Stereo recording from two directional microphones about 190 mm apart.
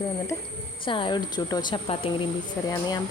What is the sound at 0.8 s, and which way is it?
Speech, 25° left (ahead or behind).